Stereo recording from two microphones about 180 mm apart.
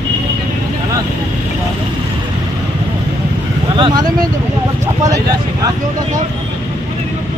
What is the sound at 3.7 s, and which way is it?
Vehicle, 30° right (ahead or behind).